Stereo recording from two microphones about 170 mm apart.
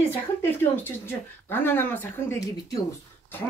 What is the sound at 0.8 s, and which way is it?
Speech, 10° left (ahead or behind).